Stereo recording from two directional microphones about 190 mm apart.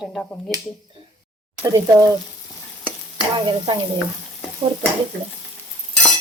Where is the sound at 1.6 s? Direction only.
15° right (ahead or behind).